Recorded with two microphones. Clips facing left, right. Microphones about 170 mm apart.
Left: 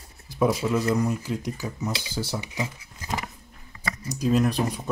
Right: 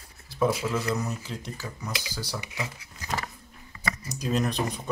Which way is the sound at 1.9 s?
25° left (ahead or behind).